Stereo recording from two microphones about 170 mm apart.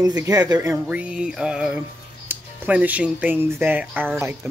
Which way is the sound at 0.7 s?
5° right (ahead or behind).